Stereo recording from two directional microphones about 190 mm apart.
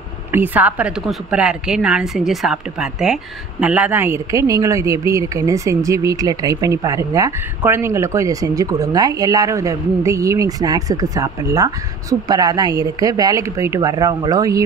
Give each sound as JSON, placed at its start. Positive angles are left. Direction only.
{"t": 0.3, "sound": "a woman's voice", "side_deg": -10}